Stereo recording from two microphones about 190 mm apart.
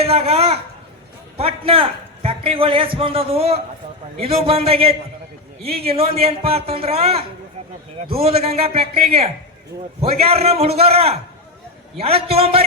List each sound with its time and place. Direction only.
0.0 s a man's voice: 30° right (ahead or behind)
10.0 s speech: 30° right (ahead or behind)